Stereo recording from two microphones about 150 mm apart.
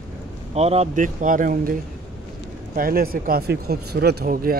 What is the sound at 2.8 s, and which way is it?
Speech, 75° right (ahead or behind).